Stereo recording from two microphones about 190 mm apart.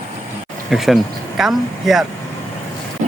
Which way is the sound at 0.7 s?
Centre (ahead or behind).